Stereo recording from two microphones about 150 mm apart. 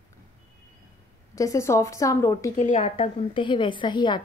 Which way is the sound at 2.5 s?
50° left (ahead or behind).